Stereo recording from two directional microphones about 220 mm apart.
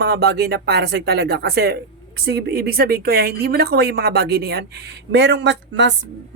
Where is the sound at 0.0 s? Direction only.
45° right (ahead or behind).